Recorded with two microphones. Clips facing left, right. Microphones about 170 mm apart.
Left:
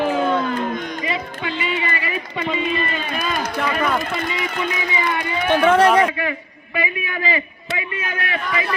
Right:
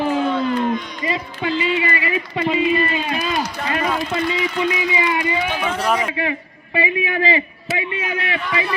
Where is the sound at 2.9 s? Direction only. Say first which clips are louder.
Right 2 dB; 50° left (ahead or behind).